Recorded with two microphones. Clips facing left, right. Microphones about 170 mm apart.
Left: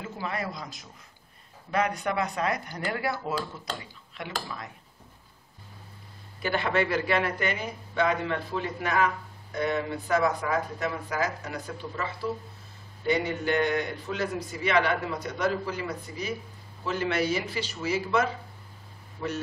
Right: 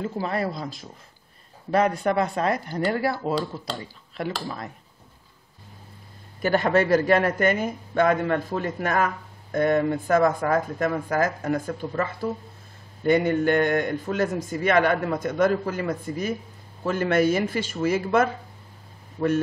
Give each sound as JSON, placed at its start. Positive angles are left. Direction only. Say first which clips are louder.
{"t": 0.0, "sound": "speech", "louder": "right 7 dB", "side_deg": -35}
{"t": 6.4, "sound": "a man's voice", "louder": "right 6 dB", "side_deg": -45}